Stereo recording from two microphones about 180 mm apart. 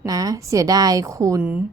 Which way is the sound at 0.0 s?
20° right (ahead or behind).